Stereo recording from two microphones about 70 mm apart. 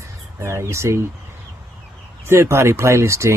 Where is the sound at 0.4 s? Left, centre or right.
Right.